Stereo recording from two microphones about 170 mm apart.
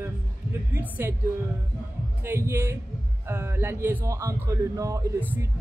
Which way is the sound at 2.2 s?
15° right (ahead or behind).